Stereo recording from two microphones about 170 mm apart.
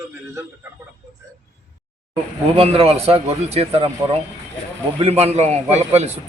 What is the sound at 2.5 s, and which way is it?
Speech, 35° right (ahead or behind).